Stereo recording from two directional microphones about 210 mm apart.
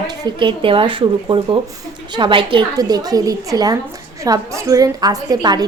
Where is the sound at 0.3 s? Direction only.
25° right (ahead or behind).